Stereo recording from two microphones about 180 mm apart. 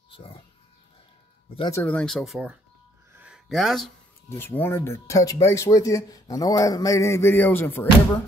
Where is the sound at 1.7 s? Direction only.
10° left (ahead or behind); by 2.6 s 5° right (ahead or behind).